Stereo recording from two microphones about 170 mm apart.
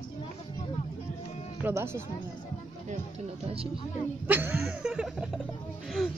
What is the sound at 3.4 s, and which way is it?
Speech, 35° right (ahead or behind).